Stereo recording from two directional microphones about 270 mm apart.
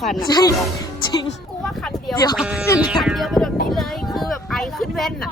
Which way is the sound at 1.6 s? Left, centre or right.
Centre.